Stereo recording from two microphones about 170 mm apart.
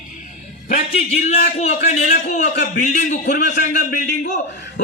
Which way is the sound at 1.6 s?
45° left (ahead or behind).